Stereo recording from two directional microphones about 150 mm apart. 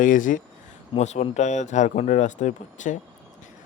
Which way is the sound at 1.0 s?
50° left (ahead or behind).